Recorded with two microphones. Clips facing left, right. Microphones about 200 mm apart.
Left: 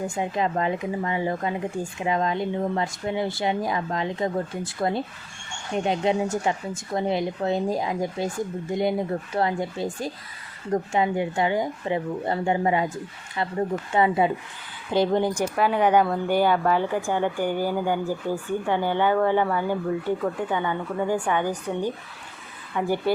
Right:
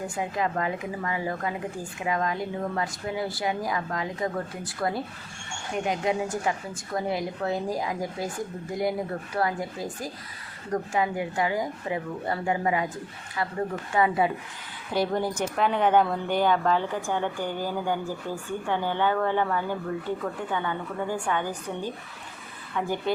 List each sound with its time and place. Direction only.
0.2 s speech: 25° left (ahead or behind)
15.4 s a woman's voice: 5° left (ahead or behind)